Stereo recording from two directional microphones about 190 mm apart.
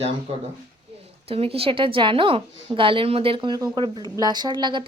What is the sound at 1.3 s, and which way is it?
A woman's voice, 30° right (ahead or behind).